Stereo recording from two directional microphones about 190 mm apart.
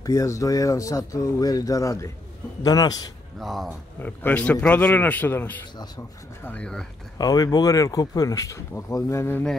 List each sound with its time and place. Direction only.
0.0 s a man's voice: 15° left (ahead or behind)
3.3 s speech: centre (ahead or behind)
7.2 s speech: 20° left (ahead or behind)